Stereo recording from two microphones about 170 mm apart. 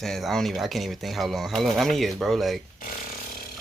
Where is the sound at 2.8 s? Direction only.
55° left (ahead or behind).